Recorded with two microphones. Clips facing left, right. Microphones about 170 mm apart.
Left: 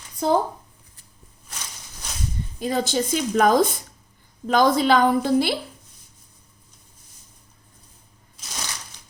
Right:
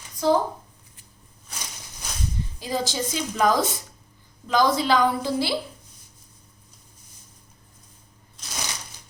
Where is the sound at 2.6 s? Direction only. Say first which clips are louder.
Left 4 dB; 60° left (ahead or behind).